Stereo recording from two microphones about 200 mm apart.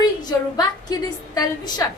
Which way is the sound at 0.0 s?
20° left (ahead or behind).